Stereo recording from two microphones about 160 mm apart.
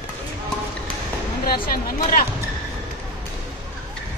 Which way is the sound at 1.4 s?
65° left (ahead or behind).